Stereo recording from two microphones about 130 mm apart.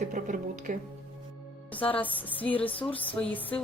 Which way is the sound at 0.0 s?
80° right.